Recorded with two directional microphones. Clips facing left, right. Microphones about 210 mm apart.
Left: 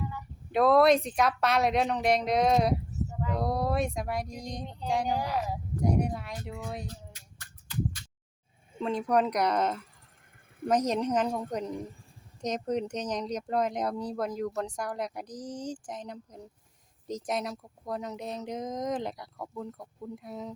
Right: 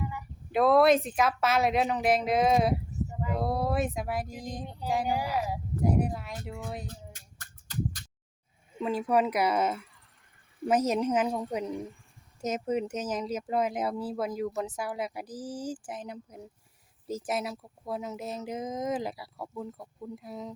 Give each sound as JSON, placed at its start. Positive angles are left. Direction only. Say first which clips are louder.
{"t": 0.5, "sound": "speech", "louder": "even", "side_deg": 0}
{"t": 6.8, "sound": "a sound", "louder": "even", "side_deg": -45}
{"t": 8.8, "sound": "a woman's voice", "louder": "even", "side_deg": -5}